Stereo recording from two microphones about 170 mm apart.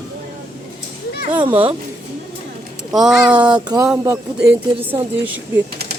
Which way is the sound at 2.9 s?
Centre (ahead or behind).